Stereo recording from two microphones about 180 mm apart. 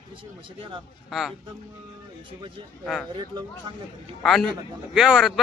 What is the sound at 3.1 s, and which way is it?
Speech, 25° right (ahead or behind).